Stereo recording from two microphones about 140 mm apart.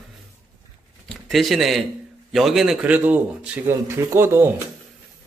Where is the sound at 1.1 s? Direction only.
Centre (ahead or behind); by 4.6 s 15° right (ahead or behind).